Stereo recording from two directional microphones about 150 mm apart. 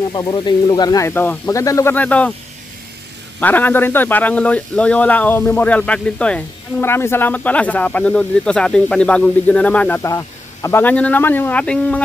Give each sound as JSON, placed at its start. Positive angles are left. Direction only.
{"t": 0.1, "sound": "speech", "side_deg": 30}
{"t": 2.0, "sound": "speech", "side_deg": 10}
{"t": 3.3, "sound": "speech", "side_deg": 10}